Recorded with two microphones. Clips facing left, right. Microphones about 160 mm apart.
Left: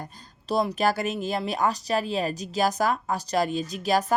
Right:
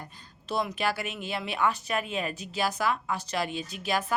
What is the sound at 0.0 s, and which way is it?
Speech, 40° left (ahead or behind).